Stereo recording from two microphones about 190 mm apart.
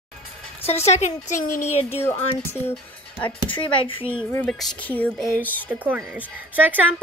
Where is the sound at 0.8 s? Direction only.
35° left (ahead or behind).